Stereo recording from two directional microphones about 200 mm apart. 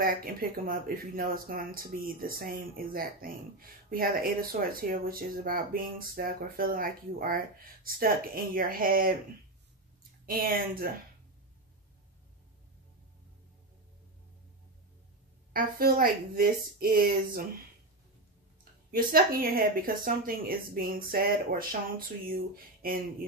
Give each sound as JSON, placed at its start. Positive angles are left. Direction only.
{"t": 0.0, "sound": "speech", "side_deg": -45}
{"t": 10.2, "sound": "speech", "side_deg": -45}
{"t": 15.5, "sound": "speech", "side_deg": -45}
{"t": 18.6, "sound": "a woman's voice", "side_deg": -50}